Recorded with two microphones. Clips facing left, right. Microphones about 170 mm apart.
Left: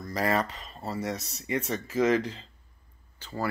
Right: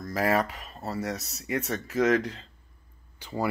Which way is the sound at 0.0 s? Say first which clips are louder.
Right 2 dB; 5° right (ahead or behind).